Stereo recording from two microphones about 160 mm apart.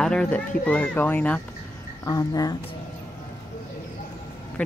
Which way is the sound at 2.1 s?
20° left (ahead or behind).